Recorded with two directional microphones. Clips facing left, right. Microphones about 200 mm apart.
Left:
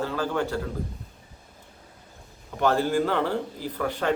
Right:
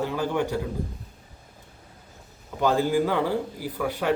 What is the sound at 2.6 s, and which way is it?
Speech, 15° right (ahead or behind).